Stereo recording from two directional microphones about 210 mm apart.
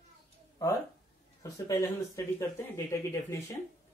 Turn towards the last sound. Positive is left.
turn(degrees=15)  # may be behind; listen again after turning